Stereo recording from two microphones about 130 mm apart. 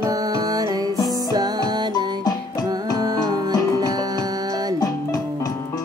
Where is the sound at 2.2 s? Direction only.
30° left (ahead or behind).